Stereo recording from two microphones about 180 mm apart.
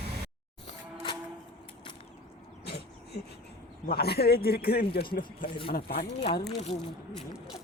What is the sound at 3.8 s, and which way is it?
A man's voice, 60° left (ahead or behind).